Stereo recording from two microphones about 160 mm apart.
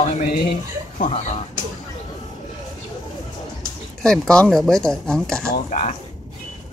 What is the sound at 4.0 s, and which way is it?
Speech, 5° left (ahead or behind).